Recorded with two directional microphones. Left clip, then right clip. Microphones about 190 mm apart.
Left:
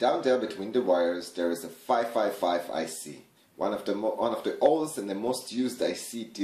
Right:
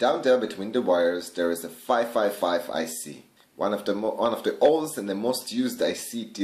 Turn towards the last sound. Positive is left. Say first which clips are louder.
# right 3 dB
turn(degrees=-25)  # may be behind; listen again after turning